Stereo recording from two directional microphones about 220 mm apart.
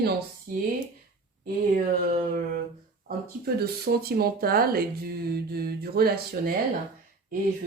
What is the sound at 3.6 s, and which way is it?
Speech, 45° right (ahead or behind).